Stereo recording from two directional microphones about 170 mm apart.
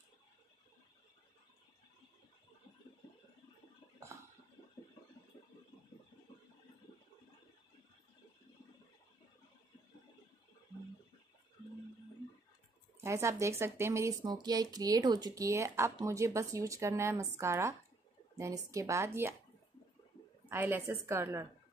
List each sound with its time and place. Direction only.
13.0 s speech: 15° right (ahead or behind)
20.4 s speech: 10° right (ahead or behind)